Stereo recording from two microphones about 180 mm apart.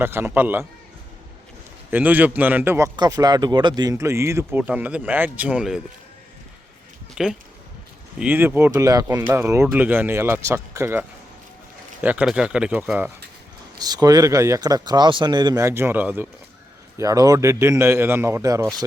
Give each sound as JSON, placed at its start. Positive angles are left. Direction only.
{"t": 0.0, "sound": "a man's voice", "side_deg": -15}
{"t": 1.9, "sound": "a man's voice", "side_deg": -10}
{"t": 7.2, "sound": "a man's voice", "side_deg": -5}
{"t": 12.0, "sound": "speech", "side_deg": -5}
{"t": 13.7, "sound": "a man's voice", "side_deg": -20}